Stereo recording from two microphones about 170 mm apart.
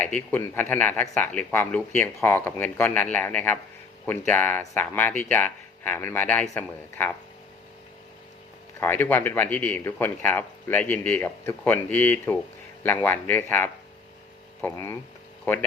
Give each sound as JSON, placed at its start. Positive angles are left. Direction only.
{"t": 0.0, "sound": "speech", "side_deg": 10}
{"t": 8.8, "sound": "speech", "side_deg": 10}